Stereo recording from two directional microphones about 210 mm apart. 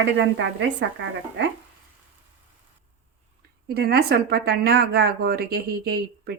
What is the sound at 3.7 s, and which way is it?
A woman's voice, 50° right (ahead or behind).